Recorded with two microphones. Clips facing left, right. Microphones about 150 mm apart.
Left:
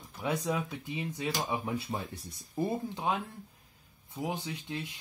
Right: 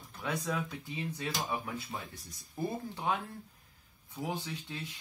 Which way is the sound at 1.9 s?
40° left (ahead or behind).